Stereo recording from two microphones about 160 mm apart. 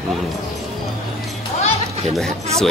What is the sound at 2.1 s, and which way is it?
Speech, centre (ahead or behind).